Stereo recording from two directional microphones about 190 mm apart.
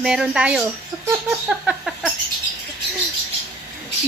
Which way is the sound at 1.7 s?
Centre (ahead or behind).